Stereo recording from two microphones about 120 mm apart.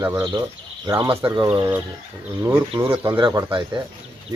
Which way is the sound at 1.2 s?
45° right (ahead or behind).